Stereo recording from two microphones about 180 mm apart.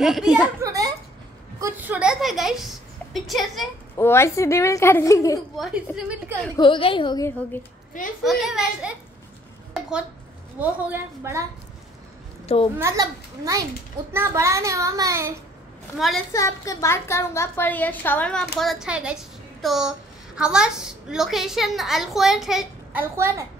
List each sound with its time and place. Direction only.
0.0 s a woman's voice: centre (ahead or behind)
0.6 s a sound: 20° right (ahead or behind)
1.6 s a woman's voice: 10° right (ahead or behind)
3.9 s a woman's voice: 15° left (ahead or behind)
5.6 s a woman's voice: 5° right (ahead or behind)
6.5 s a woman's voice: 25° left (ahead or behind)
8.2 s a woman's voice: centre (ahead or behind)
9.8 s a sound: 5° right (ahead or behind)
10.6 s child singing: 15° right (ahead or behind)
12.7 s child singing: 15° right (ahead or behind)
14.1 s child singing: 15° right (ahead or behind)
16.0 s a woman's voice: centre (ahead or behind)
16.3 s a woman's voice: 15° left (ahead or behind); by 23.0 s centre (ahead or behind)
23.1 s child singing: 15° right (ahead or behind)